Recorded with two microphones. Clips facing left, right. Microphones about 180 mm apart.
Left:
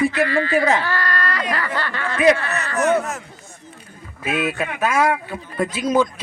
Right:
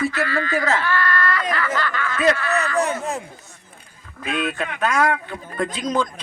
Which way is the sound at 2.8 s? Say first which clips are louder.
Left 5 dB; 65° left (ahead or behind).